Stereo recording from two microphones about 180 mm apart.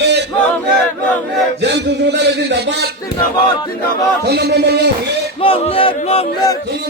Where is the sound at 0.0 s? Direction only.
70° right (ahead or behind).